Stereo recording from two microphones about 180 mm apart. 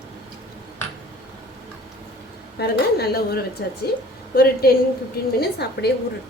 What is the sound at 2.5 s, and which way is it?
Speech, 60° left (ahead or behind).